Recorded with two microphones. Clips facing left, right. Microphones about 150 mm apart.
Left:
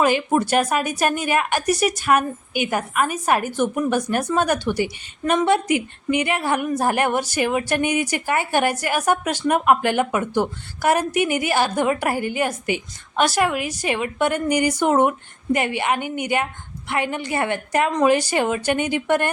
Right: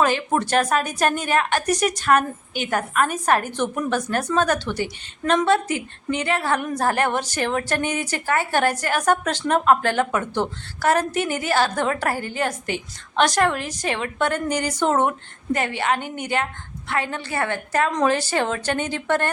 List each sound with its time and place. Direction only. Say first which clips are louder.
0.0 s a woman's voice: left 2 dB; 10° left (ahead or behind)